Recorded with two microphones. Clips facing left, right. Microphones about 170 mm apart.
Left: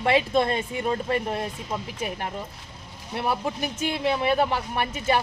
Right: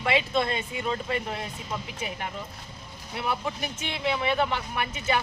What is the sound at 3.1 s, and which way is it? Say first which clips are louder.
Speech: left 4 dB; 40° left (ahead or behind).